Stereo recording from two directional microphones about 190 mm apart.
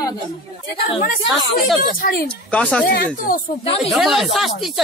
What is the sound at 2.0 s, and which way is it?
Speech, 50° left (ahead or behind).